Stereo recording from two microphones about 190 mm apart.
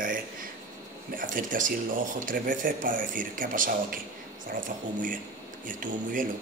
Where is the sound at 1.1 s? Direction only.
45° right (ahead or behind).